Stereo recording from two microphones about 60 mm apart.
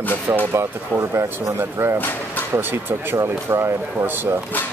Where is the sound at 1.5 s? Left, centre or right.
Right.